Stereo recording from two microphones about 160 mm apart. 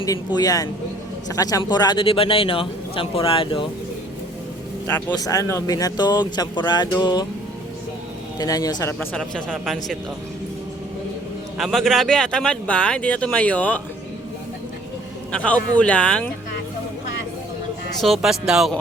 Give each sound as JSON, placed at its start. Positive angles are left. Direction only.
{"t": 0.0, "sound": "a man's voice", "side_deg": 20}
{"t": 4.9, "sound": "speech", "side_deg": 10}
{"t": 8.4, "sound": "speech", "side_deg": 25}
{"t": 11.5, "sound": "speech", "side_deg": 0}
{"t": 15.3, "sound": "speech", "side_deg": 10}
{"t": 18.0, "sound": "speech", "side_deg": 0}